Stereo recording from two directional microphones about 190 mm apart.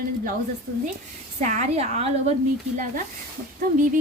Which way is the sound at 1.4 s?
40° right (ahead or behind).